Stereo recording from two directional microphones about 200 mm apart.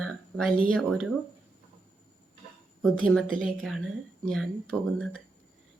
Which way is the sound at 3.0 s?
Centre (ahead or behind).